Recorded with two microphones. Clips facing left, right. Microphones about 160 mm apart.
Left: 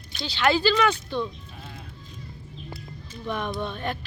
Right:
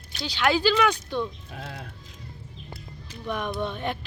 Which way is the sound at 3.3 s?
10° right (ahead or behind).